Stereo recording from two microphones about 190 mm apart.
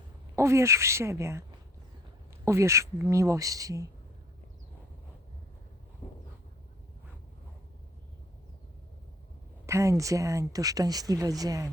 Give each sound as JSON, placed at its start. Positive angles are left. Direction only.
{"t": 0.3, "sound": "speech", "side_deg": -15}
{"t": 9.6, "sound": "speech", "side_deg": -15}